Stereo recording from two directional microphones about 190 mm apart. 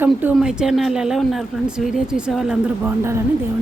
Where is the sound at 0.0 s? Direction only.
10° right (ahead or behind).